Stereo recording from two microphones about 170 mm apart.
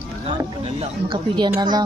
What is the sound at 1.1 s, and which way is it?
Speech, 30° right (ahead or behind).